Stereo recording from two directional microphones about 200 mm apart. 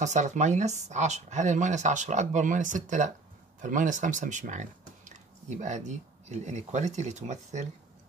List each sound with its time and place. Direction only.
0.0 s speech: 35° right (ahead or behind)